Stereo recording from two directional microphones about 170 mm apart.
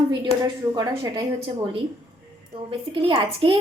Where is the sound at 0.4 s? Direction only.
25° right (ahead or behind).